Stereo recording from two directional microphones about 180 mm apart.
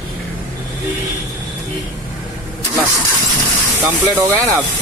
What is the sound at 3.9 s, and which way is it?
Speech, 10° right (ahead or behind).